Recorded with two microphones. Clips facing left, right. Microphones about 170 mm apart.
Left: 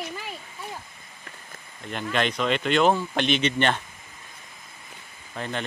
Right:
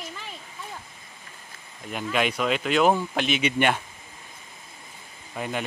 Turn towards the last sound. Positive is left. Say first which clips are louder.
# right 1 dB
turn(degrees=-10)  # may be behind; listen again after turning